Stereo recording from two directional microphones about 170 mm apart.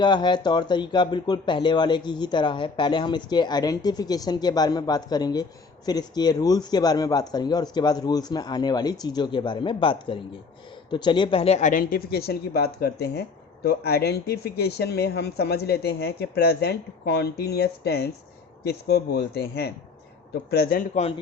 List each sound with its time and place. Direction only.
0.0 s speech: 25° left (ahead or behind); by 20.8 s 65° left (ahead or behind)